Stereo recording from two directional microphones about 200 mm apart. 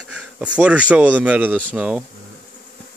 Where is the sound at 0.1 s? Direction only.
5° right (ahead or behind).